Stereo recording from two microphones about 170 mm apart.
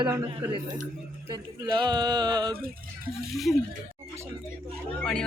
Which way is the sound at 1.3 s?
25° right (ahead or behind).